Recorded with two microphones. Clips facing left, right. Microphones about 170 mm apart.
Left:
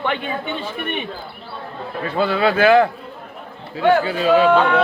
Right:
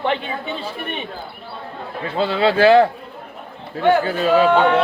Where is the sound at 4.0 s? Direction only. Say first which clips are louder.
Even; 40° right (ahead or behind).